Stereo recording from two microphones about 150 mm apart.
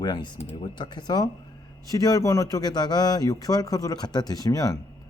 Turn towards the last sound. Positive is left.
turn(degrees=25)  # may be behind; listen again after turning